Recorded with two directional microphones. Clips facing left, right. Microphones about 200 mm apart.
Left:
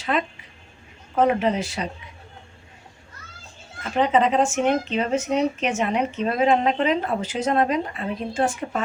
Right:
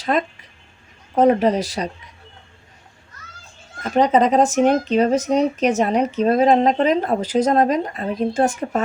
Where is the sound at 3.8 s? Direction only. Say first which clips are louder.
Right 4 dB; 40° right (ahead or behind).